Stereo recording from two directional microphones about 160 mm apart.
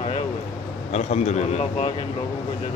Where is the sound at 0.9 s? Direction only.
40° left (ahead or behind).